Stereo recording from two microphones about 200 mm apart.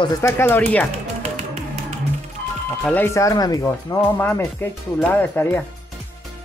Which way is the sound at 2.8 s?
10° left (ahead or behind).